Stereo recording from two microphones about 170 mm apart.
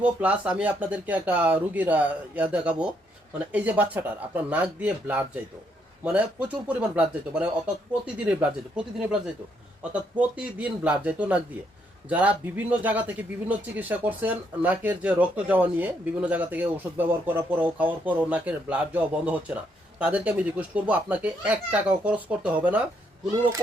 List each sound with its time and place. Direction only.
0.0 s speech: 10° right (ahead or behind)